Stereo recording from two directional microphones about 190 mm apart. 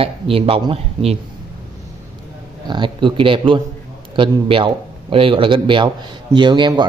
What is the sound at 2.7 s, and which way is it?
A man's voice, 25° right (ahead or behind).